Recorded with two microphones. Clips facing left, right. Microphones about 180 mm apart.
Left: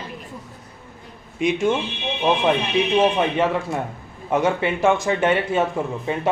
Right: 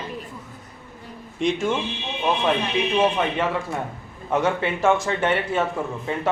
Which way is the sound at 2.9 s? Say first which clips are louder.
Left 3 dB; 15° left (ahead or behind).